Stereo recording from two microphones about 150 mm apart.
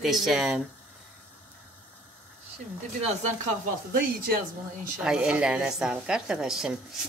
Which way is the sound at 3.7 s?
75° right (ahead or behind).